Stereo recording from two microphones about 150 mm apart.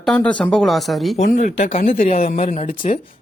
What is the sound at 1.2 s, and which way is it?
Speech, 50° left (ahead or behind).